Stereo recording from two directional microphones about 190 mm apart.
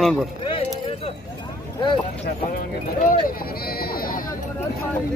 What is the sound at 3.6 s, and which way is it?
Sheep, 55° left (ahead or behind).